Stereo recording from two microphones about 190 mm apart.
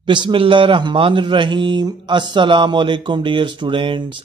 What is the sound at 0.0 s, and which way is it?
A man's voice, 25° right (ahead or behind).